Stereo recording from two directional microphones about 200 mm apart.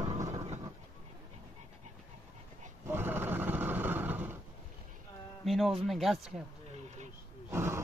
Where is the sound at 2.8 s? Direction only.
10° right (ahead or behind).